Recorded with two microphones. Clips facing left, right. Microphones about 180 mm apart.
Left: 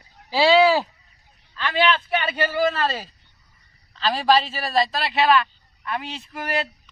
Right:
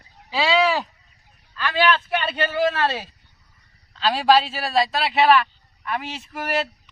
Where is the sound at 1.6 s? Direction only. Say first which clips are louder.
Right 1 dB; 20° left (ahead or behind).